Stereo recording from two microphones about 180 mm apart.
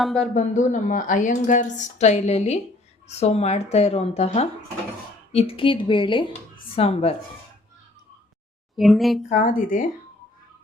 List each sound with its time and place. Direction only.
0.2 s a woman's voice: 40° left (ahead or behind)
8.8 s speech: centre (ahead or behind)
9.3 s a woman's voice: 50° left (ahead or behind)